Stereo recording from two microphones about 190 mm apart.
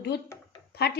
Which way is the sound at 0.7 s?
55° left (ahead or behind).